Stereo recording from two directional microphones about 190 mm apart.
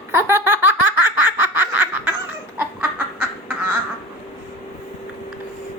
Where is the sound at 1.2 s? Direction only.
10° right (ahead or behind).